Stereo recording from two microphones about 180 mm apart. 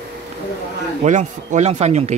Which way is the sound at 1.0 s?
40° right (ahead or behind).